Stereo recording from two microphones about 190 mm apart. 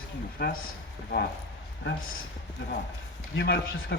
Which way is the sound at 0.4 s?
55° left (ahead or behind).